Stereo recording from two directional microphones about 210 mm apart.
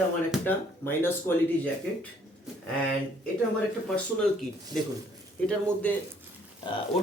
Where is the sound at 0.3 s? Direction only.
10° left (ahead or behind).